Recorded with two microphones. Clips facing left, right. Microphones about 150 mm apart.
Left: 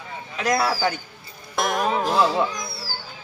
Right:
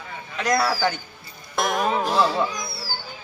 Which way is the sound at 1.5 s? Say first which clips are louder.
Even; centre (ahead or behind).